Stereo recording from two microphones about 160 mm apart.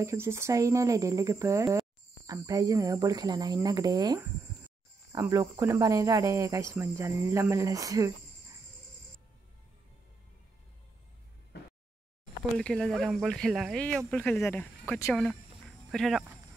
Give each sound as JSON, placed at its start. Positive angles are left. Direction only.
{"t": 0.0, "sound": "speech", "side_deg": -15}
{"t": 12.5, "sound": "speech", "side_deg": 5}